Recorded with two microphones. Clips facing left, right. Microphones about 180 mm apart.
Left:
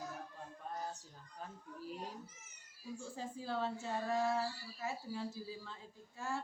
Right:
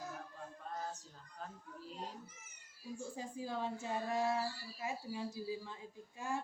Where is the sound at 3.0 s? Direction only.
15° right (ahead or behind).